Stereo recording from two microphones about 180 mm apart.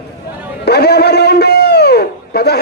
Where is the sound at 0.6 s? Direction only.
65° left (ahead or behind).